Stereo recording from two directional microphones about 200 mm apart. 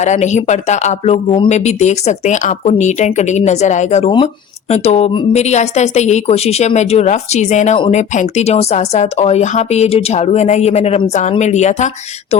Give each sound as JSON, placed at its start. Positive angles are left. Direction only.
{"t": 0.0, "sound": "speech", "side_deg": 35}